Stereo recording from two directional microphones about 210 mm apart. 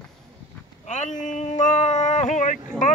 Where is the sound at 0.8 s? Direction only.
35° left (ahead or behind).